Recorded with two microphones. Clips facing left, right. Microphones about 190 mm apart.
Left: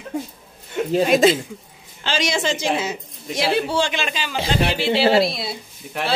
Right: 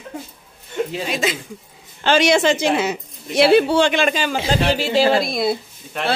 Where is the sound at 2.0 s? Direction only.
60° right (ahead or behind).